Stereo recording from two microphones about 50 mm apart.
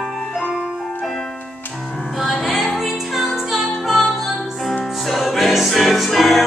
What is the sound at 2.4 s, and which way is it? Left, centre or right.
Music, centre.